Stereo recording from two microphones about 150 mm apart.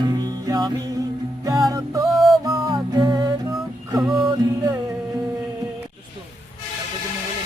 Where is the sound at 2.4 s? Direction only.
30° right (ahead or behind).